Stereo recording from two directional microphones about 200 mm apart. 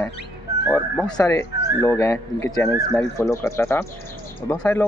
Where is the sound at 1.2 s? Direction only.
15° left (ahead or behind).